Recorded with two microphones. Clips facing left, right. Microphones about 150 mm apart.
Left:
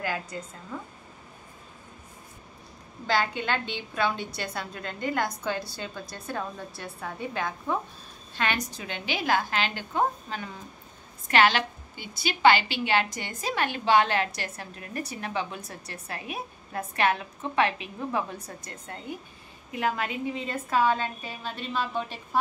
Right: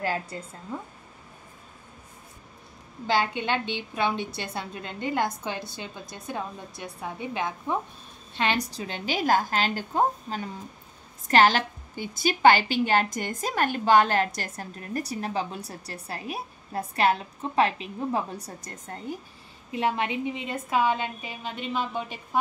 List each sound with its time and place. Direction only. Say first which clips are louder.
0.0 s a woman's voice: right 2 dB; 30° right (ahead or behind)
3.1 s a woman's voice: right 1 dB; 20° right (ahead or behind)
8.4 s a woman's voice: right 3 dB; 30° right (ahead or behind)
19.7 s a woman's voice: right 2 dB; 25° right (ahead or behind)